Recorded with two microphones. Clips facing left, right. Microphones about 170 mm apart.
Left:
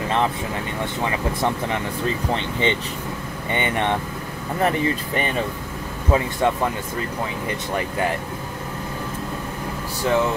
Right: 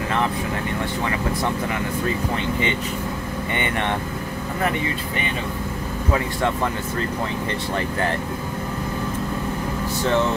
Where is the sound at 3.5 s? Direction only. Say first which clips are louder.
Left 3 dB; 15° left (ahead or behind).